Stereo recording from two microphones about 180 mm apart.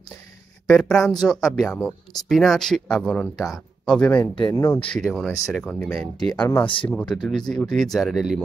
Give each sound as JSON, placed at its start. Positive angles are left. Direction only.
{"t": 0.7, "sound": "speech", "side_deg": 0}
{"t": 4.4, "sound": "speech", "side_deg": 25}
{"t": 4.9, "sound": "speech", "side_deg": 0}
{"t": 6.6, "sound": "speech", "side_deg": 30}
{"t": 6.9, "sound": "speech", "side_deg": 5}